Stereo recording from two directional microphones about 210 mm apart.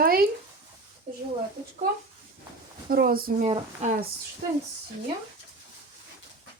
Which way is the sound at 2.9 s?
45° right (ahead or behind).